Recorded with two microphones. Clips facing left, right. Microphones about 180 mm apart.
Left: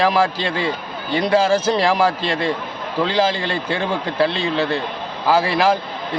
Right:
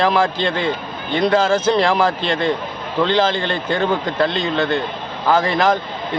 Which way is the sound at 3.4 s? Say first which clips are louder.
Right 3 dB; 5° left (ahead or behind).